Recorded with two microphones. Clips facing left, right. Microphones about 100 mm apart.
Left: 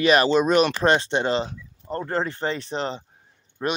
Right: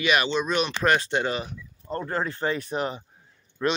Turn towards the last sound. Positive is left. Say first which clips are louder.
# right 1 dB
turn(degrees=25)  # may be behind; listen again after turning